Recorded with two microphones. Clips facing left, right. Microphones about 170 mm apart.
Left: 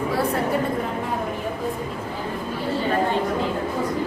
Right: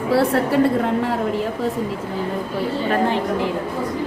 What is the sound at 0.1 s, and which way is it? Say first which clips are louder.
Speech: right 8 dB; 80° right.